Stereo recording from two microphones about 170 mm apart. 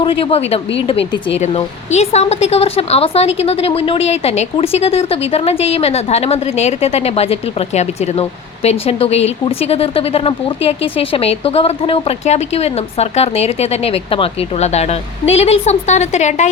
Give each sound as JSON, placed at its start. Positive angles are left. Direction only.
{"t": 0.0, "sound": "a woman's voice", "side_deg": 30}